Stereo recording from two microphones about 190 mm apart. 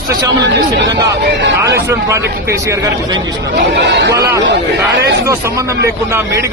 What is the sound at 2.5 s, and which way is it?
Speech, 15° right (ahead or behind).